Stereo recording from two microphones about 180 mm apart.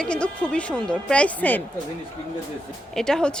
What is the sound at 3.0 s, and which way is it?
Speech, 5° left (ahead or behind).